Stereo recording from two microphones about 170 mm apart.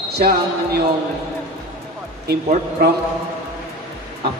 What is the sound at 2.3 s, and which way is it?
Speech, 65° right (ahead or behind).